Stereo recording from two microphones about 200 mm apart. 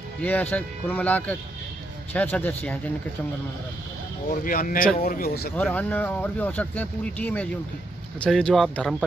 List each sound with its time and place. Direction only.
0.2 s speech: 10° left (ahead or behind)
4.3 s speech: 45° left (ahead or behind)
5.6 s speech: 5° left (ahead or behind)